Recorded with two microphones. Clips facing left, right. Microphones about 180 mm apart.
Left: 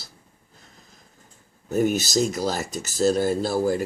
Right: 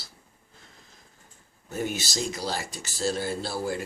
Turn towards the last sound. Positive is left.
turn(degrees=45)  # may be behind; listen again after turning